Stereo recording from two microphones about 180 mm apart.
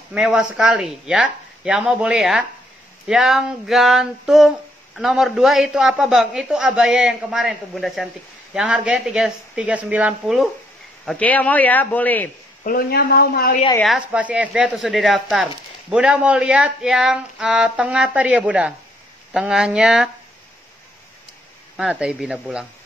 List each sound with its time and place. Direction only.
0.1 s a man's voice: 5° right (ahead or behind)
12.6 s speech: 55° left (ahead or behind)
13.7 s speech: 5° right (ahead or behind)
21.7 s speech: 5° right (ahead or behind)